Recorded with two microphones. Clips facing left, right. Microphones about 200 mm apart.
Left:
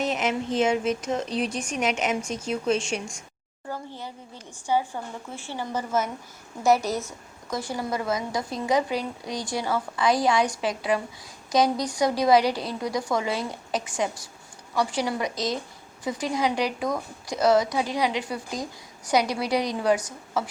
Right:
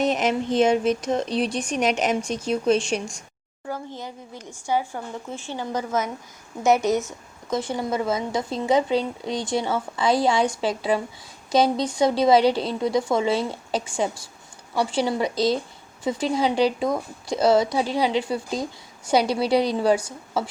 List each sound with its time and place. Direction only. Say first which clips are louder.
0.0 s speech: right 4 dB; 35° right (ahead or behind)
3.7 s a woman's voice: right 3 dB; 15° right (ahead or behind)